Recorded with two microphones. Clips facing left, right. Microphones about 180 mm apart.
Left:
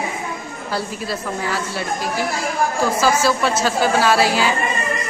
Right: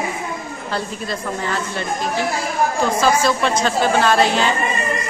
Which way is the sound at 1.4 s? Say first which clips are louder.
Even; 10° left (ahead or behind).